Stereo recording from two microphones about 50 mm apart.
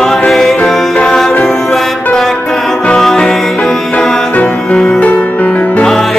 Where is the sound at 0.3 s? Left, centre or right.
Centre.